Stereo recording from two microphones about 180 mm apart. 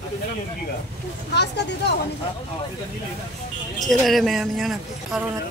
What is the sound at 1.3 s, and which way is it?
Speech, 70° left (ahead or behind).